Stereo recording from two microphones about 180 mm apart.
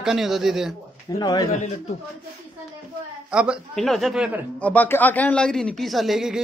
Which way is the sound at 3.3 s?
5° right (ahead or behind).